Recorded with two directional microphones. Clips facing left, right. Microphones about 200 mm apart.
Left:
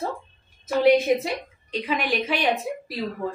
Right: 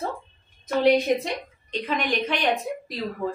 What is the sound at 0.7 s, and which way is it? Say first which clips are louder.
A woman's voice: left 2 dB; 5° left (ahead or behind).